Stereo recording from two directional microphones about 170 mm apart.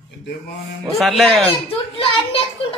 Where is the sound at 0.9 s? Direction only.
Centre (ahead or behind).